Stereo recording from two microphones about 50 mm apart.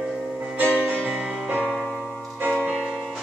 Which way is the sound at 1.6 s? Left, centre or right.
Centre.